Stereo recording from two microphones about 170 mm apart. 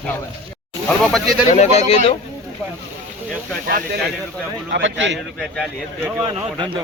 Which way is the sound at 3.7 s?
65° right (ahead or behind).